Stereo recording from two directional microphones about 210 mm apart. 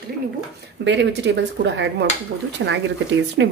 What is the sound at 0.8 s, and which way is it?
Speech, 60° right (ahead or behind).